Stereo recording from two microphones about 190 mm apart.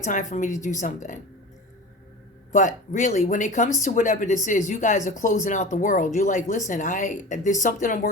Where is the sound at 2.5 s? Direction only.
40° left (ahead or behind).